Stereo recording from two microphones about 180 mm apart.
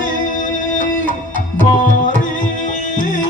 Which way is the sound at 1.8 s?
45° left (ahead or behind).